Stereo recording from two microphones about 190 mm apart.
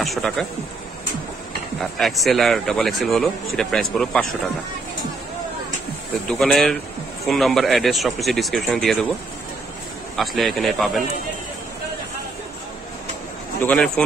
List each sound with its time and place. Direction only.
0.0 s speech: centre (ahead or behind)
1.8 s a man's voice: centre (ahead or behind)
6.2 s a man's voice: centre (ahead or behind)
10.1 s a man's voice: centre (ahead or behind)
13.6 s speech: 5° left (ahead or behind)